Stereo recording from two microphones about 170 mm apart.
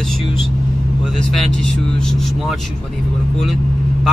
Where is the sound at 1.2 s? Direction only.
5° left (ahead or behind).